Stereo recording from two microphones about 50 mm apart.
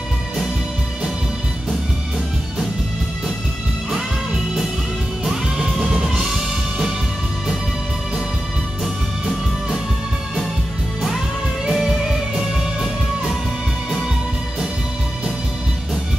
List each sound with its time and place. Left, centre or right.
5.2 s music: centre
11.7 s music: centre